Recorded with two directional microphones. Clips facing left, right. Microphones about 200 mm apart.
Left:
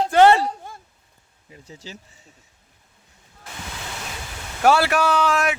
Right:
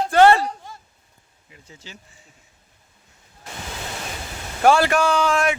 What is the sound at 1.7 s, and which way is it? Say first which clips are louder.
Speech: left 4 dB; 35° left (ahead or behind).